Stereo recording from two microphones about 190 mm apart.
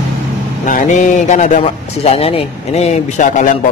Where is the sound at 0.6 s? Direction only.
40° left (ahead or behind).